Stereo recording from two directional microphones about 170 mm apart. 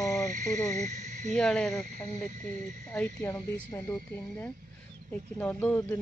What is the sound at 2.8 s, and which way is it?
A woman's voice, 10° left (ahead or behind).